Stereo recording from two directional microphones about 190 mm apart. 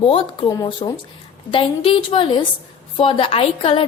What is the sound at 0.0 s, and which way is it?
A woman's voice, 30° left (ahead or behind).